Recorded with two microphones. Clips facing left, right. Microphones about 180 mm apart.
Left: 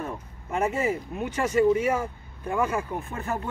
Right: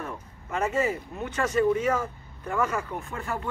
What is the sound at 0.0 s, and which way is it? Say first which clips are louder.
Speech: left 3 dB; 15° left (ahead or behind).